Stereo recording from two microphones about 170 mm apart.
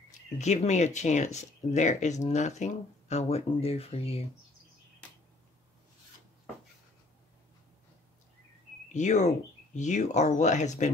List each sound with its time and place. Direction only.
0.4 s speech: 40° left (ahead or behind)
8.8 s speech: 45° left (ahead or behind)